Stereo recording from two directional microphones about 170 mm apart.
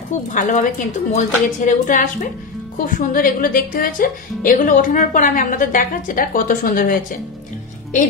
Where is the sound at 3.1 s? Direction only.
55° left (ahead or behind).